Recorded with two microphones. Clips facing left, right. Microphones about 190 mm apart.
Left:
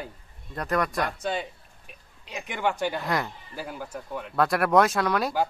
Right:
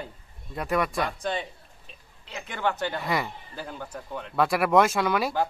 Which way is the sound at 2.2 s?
15° left (ahead or behind).